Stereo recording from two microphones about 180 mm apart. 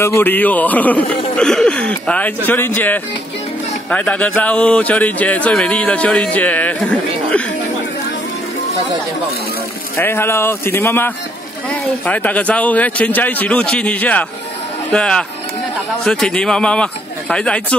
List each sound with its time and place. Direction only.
0.0 s a man's voice: 10° left (ahead or behind)
9.9 s a man's voice: 10° left (ahead or behind)